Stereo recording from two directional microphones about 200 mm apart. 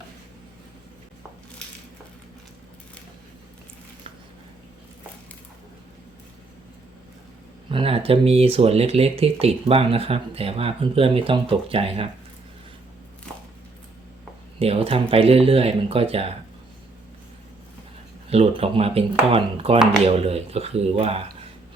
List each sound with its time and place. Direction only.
7.7 s speech: 30° right (ahead or behind)
14.6 s speech: 30° right (ahead or behind)
18.3 s speech: 30° right (ahead or behind)